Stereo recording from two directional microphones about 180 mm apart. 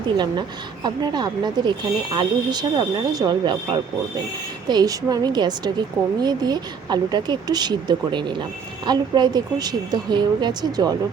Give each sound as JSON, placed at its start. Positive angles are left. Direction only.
{"t": 0.2, "sound": "a woman's voice", "side_deg": -25}